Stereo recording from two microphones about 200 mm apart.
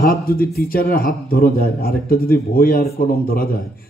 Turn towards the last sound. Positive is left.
turn(degrees=45)  # may be behind; listen again after turning